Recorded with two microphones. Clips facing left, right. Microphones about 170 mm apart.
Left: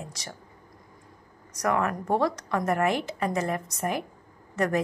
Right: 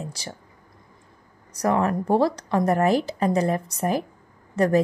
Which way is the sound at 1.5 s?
30° right (ahead or behind).